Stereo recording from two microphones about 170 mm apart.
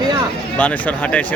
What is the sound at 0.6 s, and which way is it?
Speech, 10° left (ahead or behind).